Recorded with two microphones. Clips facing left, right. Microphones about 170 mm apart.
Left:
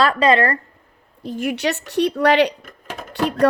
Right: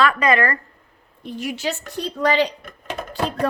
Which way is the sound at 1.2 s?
50° left (ahead or behind).